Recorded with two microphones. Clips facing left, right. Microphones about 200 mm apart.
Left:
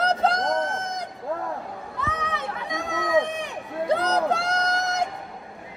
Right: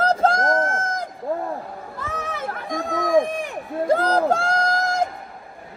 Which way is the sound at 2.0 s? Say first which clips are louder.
Even; 50° right (ahead or behind).